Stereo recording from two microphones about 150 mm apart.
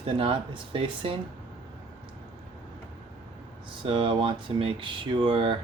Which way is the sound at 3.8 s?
35° right (ahead or behind).